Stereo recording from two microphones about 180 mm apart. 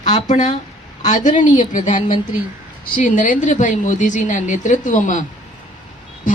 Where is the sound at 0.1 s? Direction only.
45° left (ahead or behind).